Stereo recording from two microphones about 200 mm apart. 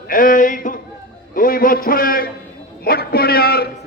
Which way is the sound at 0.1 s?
45° left (ahead or behind).